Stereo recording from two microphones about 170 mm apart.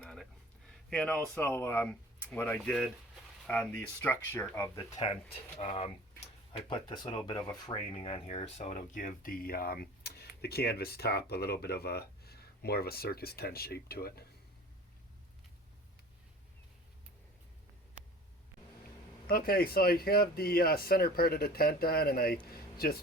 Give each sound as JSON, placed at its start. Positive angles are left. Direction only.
{"t": 0.0, "sound": "a sound", "side_deg": 0}
{"t": 0.9, "sound": "speech", "side_deg": 5}
{"t": 5.0, "sound": "speech", "side_deg": 35}
{"t": 19.3, "sound": "speech", "side_deg": 60}